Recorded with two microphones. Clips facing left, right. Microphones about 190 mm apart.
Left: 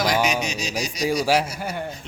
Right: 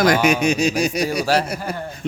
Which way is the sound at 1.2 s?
10° left (ahead or behind).